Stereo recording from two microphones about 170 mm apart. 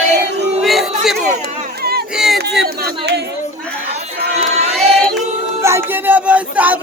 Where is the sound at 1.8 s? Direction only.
65° right (ahead or behind).